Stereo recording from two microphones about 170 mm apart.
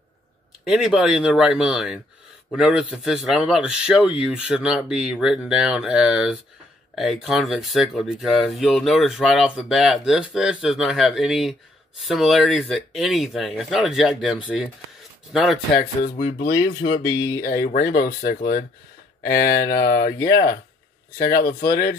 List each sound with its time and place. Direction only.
0.7 s speech: 5° right (ahead or behind)
15.7 s speech: 55° left (ahead or behind)
16.8 s speech: 20° left (ahead or behind)
17.4 s speech: 60° left (ahead or behind)